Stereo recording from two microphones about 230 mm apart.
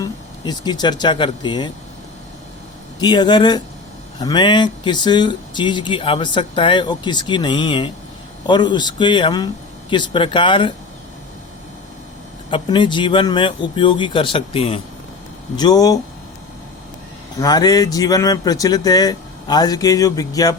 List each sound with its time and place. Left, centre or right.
0.0 s speech: centre
3.0 s speech: centre
12.5 s speech: left
17.4 s speech: centre